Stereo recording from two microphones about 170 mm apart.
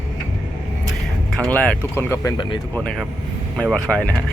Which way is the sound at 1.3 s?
5° left (ahead or behind).